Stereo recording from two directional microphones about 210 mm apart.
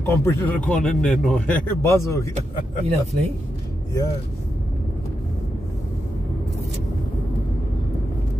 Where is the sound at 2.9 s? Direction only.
30° right (ahead or behind).